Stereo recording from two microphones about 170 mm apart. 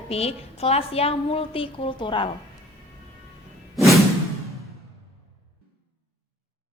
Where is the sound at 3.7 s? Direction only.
Centre (ahead or behind).